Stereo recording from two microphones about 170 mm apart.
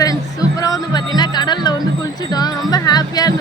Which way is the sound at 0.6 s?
20° left (ahead or behind).